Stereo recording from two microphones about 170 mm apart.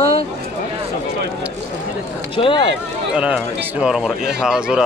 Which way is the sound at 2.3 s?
30° left (ahead or behind).